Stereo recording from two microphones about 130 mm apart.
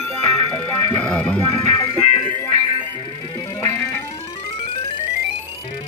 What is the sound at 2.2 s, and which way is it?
Music, 35° right (ahead or behind).